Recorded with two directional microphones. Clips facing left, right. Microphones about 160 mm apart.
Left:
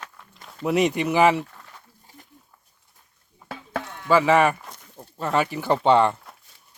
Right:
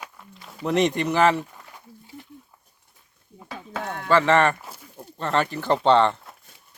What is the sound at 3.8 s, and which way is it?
Chop, 60° right (ahead or behind).